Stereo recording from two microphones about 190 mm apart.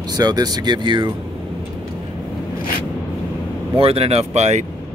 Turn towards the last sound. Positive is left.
turn(degrees=-35)  # may be behind; listen again after turning